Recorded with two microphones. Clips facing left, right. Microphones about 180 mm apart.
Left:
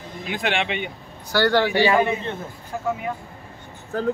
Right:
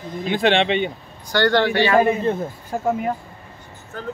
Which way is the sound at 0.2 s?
30° right (ahead or behind).